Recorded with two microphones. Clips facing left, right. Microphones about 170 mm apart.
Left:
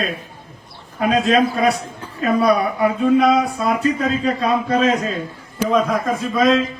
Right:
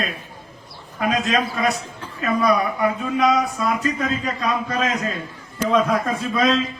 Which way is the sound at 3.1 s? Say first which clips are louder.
Left 4 dB; 35° left (ahead or behind).